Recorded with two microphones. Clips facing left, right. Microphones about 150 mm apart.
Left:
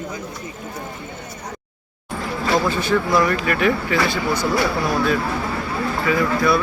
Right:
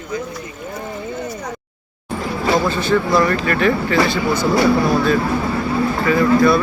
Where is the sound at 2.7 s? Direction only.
10° left (ahead or behind).